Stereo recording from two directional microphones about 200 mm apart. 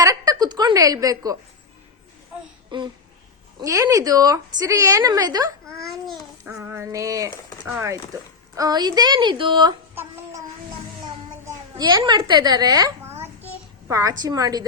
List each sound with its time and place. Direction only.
0.0 s a woman's voice: 15° right (ahead or behind)
2.6 s a sound: 20° right (ahead or behind)
3.6 s a woman's voice: 15° right (ahead or behind)
5.7 s speech: centre (ahead or behind)
6.4 s a woman's voice: 10° right (ahead or behind)
8.5 s a woman's voice: 20° right (ahead or behind)
9.9 s a woman's voice: 10° right (ahead or behind)
11.0 s babbling: 20° right (ahead or behind)
13.4 s a child's voice: 15° right (ahead or behind)